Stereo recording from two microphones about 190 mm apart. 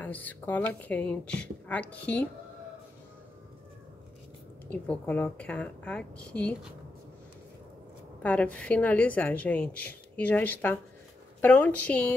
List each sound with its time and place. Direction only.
0.0 s a woman's voice: 10° left (ahead or behind)
4.6 s a woman's voice: 10° left (ahead or behind)
8.2 s a woman's voice: 5° left (ahead or behind)